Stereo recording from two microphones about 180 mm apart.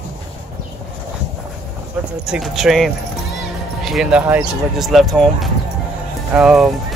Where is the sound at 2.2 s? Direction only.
Centre (ahead or behind).